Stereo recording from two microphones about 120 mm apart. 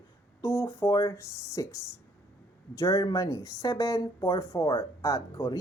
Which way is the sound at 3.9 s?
40° left (ahead or behind).